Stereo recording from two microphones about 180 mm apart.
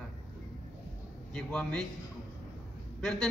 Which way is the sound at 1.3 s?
5° left (ahead or behind).